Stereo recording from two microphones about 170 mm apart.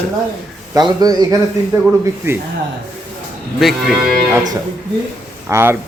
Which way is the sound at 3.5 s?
Centre (ahead or behind).